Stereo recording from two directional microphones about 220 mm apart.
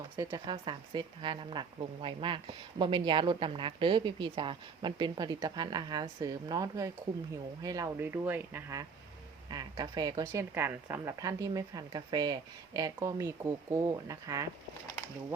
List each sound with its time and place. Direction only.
0.2 s a woman's voice: 20° right (ahead or behind)